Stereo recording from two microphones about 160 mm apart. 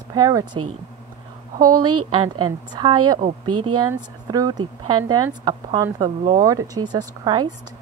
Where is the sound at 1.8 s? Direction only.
30° right (ahead or behind).